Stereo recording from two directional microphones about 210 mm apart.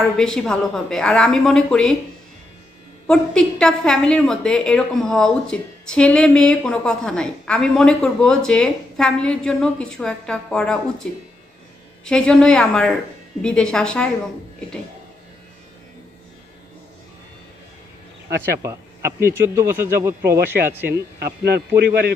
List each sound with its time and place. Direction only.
0.2 s a woman's voice: centre (ahead or behind)
3.1 s a woman's voice: 5° left (ahead or behind)
12.0 s a woman's voice: 5° left (ahead or behind)
18.6 s speech: 15° right (ahead or behind)
21.2 s a man's voice: 50° right (ahead or behind)